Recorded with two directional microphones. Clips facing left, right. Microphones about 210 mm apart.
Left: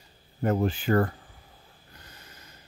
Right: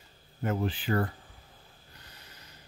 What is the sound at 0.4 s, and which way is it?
Speech, 45° left (ahead or behind).